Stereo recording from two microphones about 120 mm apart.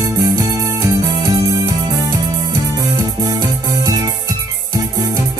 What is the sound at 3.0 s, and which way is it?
Music, 30° right (ahead or behind).